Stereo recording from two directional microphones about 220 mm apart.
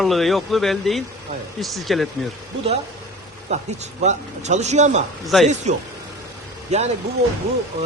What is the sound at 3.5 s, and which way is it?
Speech, 30° right (ahead or behind).